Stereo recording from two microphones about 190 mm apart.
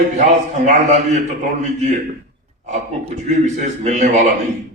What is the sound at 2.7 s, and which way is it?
A man's voice, 40° right (ahead or behind).